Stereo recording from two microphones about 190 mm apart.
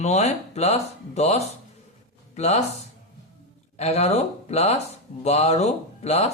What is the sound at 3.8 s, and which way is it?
Speech, 35° left (ahead or behind).